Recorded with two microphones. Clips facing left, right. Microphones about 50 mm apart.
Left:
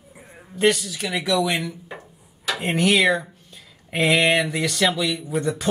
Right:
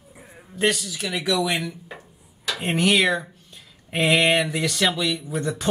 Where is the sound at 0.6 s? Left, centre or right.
Centre.